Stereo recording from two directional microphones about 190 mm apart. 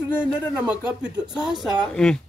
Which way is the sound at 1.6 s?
Centre (ahead or behind).